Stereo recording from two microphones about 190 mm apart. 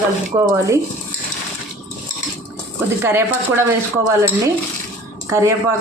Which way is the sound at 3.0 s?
10° right (ahead or behind).